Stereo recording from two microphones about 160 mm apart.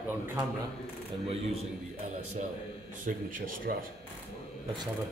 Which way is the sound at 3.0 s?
55° right (ahead or behind).